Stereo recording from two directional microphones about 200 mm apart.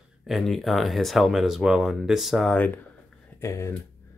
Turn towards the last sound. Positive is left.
turn(degrees=15)  # may be behind; listen again after turning